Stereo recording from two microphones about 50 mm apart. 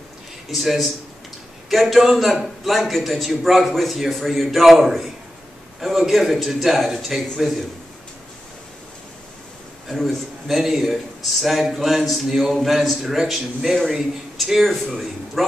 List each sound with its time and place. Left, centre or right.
0.5 s a man's voice: centre
9.8 s a man's voice: centre